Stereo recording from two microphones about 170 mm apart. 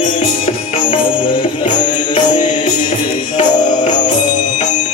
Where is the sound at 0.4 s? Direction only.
35° left (ahead or behind).